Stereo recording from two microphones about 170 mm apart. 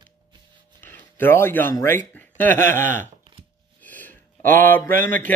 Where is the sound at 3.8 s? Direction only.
10° left (ahead or behind).